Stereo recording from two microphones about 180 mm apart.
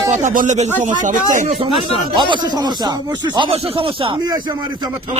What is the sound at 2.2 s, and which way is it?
Speech, 25° right (ahead or behind).